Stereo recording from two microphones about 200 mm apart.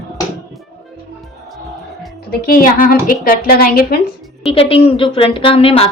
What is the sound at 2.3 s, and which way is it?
A woman's voice, 45° left (ahead or behind).